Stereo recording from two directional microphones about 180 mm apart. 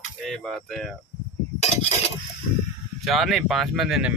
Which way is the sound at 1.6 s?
35° left (ahead or behind).